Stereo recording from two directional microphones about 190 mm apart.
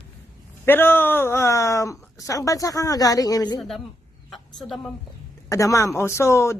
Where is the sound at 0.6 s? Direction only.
10° left (ahead or behind).